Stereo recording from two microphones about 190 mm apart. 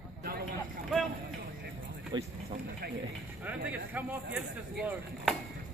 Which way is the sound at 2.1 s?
25° right (ahead or behind).